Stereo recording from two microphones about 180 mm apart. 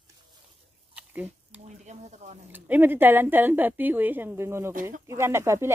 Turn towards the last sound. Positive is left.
turn(degrees=-15)  # may be behind; listen again after turning